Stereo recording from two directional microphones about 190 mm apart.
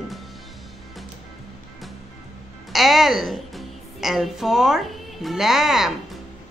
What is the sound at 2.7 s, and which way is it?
A woman's voice, centre (ahead or behind).